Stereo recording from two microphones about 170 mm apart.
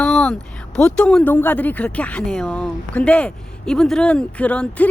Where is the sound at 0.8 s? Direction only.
5° left (ahead or behind).